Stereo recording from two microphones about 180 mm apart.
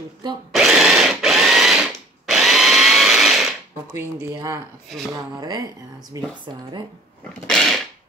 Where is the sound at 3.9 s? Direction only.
15° right (ahead or behind).